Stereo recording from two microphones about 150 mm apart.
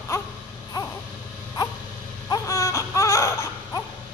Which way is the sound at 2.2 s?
25° left (ahead or behind).